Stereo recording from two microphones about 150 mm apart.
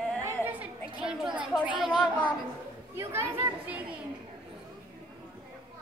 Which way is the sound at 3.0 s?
15° right (ahead or behind).